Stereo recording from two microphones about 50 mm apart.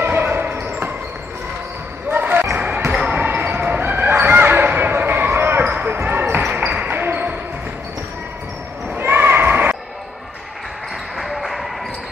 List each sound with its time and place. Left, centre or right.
0.0 s basketball bounce: right
2.0 s basketball bounce: right
5.7 s basketball bounce: right
8.9 s basketball bounce: right
11.1 s basketball bounce: centre